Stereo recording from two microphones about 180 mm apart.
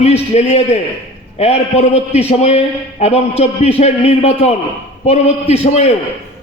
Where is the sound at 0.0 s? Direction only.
35° left (ahead or behind).